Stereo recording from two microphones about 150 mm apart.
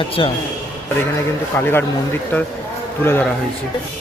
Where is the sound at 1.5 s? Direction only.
15° left (ahead or behind).